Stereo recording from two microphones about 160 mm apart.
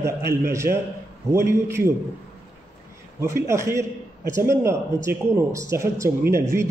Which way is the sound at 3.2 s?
15° right (ahead or behind).